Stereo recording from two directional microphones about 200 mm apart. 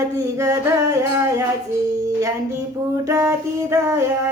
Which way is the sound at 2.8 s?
15° right (ahead or behind).